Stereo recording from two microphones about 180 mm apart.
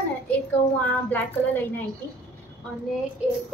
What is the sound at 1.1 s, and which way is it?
Speech, 10° left (ahead or behind).